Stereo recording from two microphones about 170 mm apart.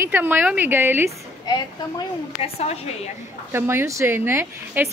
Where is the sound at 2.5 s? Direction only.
40° left (ahead or behind).